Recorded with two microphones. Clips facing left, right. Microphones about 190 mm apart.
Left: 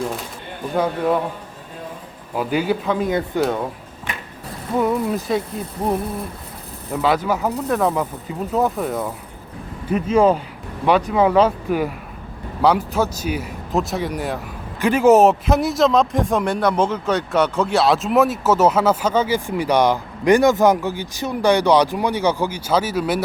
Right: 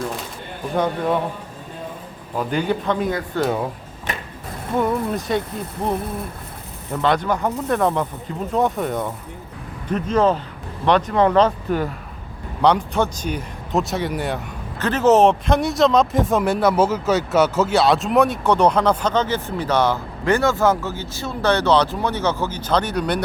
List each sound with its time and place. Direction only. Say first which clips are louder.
0.8 s speech: left 1 dB; 5° left (ahead or behind)
2.3 s speech: left 1 dB; 5° left (ahead or behind)
3.1 s speech: left 3 dB; 20° left (ahead or behind)
4.8 s speech: left 2 dB; 5° left (ahead or behind)
6.9 s speech: left 1 dB; 5° left (ahead or behind)
14.8 s speech: left 2 dB; 10° left (ahead or behind)